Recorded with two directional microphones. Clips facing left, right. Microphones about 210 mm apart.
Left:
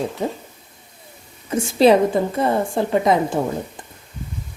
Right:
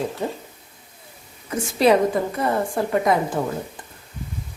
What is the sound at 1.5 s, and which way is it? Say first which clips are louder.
A woman's voice: left 3 dB; 25° left (ahead or behind).